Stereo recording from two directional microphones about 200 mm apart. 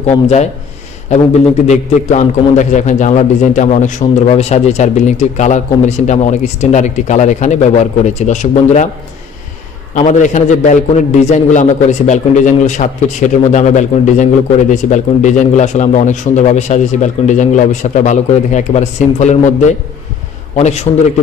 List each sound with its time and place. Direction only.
0.0 s a man's voice: 35° left (ahead or behind)
1.7 s a man's voice: 35° left (ahead or behind)
9.9 s a man's voice: 40° left (ahead or behind)